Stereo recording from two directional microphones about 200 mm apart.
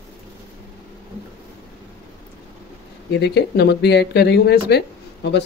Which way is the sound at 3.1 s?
55° left (ahead or behind).